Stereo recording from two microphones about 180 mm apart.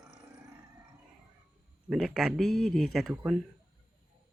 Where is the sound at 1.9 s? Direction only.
5° right (ahead or behind).